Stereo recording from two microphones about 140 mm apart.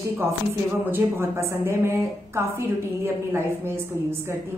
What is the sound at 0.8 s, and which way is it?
A woman's voice, 15° right (ahead or behind).